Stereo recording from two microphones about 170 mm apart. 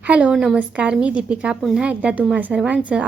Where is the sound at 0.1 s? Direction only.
5° right (ahead or behind).